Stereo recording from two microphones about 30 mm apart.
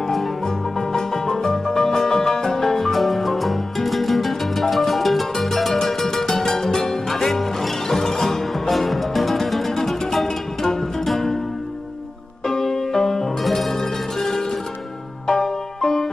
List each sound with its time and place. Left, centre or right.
0.5 s music: centre
8.5 s music: centre
12.4 s music: centre
13.4 s zither: centre
13.7 s music: centre